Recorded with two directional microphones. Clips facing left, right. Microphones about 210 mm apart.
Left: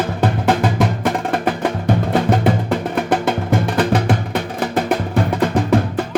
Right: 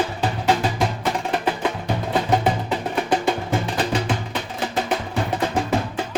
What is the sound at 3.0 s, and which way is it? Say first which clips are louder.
Music: left 3 dB; 55° left (ahead or behind).